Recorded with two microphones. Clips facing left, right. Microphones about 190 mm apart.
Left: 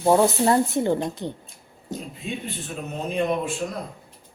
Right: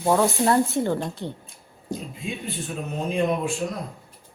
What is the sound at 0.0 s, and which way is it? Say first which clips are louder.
Speech: left 2 dB; 15° left (ahead or behind).